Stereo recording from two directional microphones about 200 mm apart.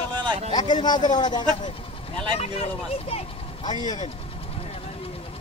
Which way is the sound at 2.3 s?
30° left (ahead or behind).